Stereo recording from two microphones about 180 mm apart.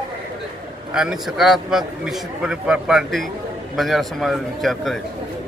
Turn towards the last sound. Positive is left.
turn(degrees=0)  # may be behind; listen again after turning